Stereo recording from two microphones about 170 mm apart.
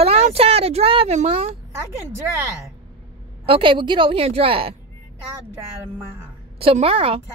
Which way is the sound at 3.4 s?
30° right (ahead or behind).